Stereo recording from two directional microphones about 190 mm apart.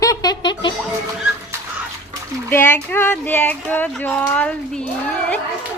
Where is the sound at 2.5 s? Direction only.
10° left (ahead or behind).